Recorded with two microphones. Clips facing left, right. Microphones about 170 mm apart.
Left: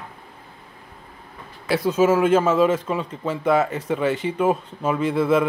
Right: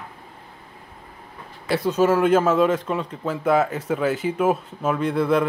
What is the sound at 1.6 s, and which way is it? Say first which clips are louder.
Speech: left 1 dB; centre (ahead or behind).